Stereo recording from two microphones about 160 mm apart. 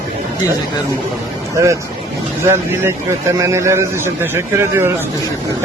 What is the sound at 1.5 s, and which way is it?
Speech, 20° right (ahead or behind).